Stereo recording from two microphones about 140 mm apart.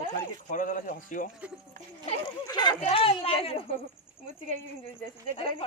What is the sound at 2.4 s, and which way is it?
Speech, 30° left (ahead or behind).